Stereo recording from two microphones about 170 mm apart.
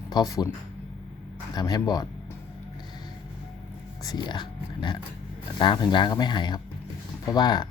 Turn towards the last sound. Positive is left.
turn(degrees=25)  # may be behind; listen again after turning